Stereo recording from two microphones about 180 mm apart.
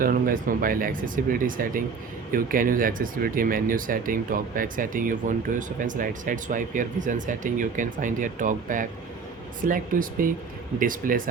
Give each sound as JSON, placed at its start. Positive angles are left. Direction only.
{"t": 0.0, "sound": "speech", "side_deg": -50}